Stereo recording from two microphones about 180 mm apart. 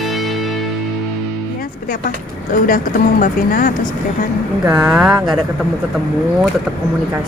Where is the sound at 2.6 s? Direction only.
50° left (ahead or behind).